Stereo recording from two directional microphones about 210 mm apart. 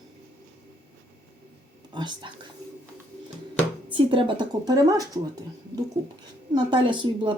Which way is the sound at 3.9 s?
25° right (ahead or behind).